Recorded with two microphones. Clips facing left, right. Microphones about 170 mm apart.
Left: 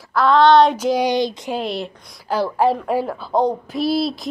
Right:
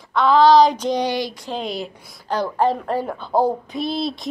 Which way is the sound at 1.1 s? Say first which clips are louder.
Left 5 dB; 20° left (ahead or behind).